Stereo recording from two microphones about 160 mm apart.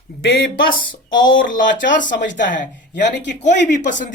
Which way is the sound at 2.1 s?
90° left.